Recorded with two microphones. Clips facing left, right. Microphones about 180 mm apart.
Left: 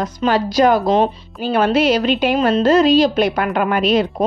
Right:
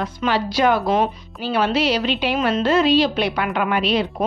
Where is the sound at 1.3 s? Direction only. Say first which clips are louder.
Left 4 dB; 50° left (ahead or behind).